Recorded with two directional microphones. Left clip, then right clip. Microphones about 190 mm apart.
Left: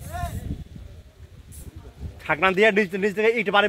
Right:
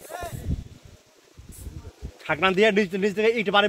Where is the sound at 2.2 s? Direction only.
40° right (ahead or behind).